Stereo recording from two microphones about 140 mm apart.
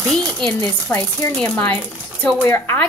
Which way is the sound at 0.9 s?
15° left (ahead or behind).